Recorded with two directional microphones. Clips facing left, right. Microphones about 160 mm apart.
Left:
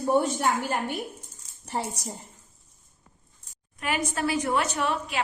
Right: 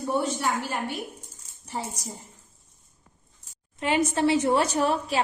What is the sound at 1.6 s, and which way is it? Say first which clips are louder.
Speech: left 2 dB; 60° left (ahead or behind).